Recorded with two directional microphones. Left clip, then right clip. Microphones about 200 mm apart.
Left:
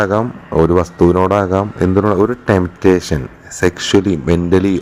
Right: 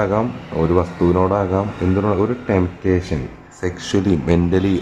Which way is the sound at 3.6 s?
25° left (ahead or behind).